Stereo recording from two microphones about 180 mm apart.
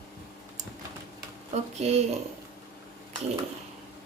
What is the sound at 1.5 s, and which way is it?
Speech, 35° right (ahead or behind).